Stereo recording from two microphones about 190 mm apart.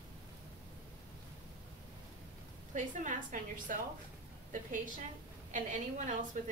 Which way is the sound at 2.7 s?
40° right (ahead or behind).